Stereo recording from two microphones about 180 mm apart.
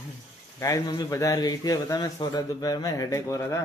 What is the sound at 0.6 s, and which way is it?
Speech, 20° left (ahead or behind).